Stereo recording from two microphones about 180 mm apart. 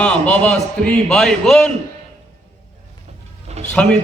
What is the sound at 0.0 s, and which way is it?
A man's voice, 5° left (ahead or behind).